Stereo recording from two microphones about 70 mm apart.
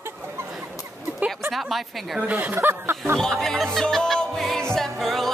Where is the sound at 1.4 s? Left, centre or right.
Centre.